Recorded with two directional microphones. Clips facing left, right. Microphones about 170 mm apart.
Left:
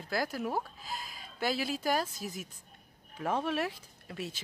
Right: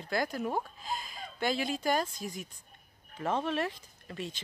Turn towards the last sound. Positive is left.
turn(degrees=5)  # may be behind; listen again after turning